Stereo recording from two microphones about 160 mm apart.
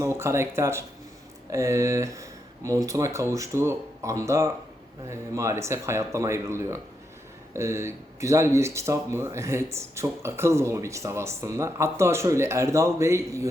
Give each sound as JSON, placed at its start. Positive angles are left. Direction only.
{"t": 0.0, "sound": "speech", "side_deg": -15}